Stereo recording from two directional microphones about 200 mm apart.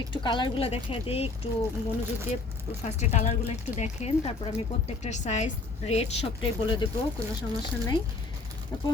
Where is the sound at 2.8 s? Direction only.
35° left (ahead or behind).